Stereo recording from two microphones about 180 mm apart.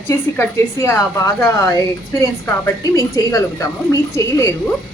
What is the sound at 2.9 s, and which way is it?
A woman's voice, 20° left (ahead or behind).